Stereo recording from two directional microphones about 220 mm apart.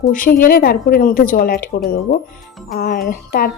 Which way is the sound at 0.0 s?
40° left (ahead or behind).